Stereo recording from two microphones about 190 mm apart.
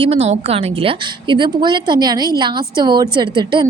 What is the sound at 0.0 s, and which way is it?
A woman's voice, 30° right (ahead or behind).